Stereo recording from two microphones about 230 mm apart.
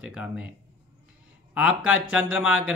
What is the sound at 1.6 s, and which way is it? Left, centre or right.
Speech, left.